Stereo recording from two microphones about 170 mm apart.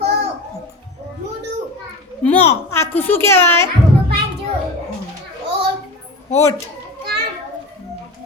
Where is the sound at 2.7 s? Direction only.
15° left (ahead or behind).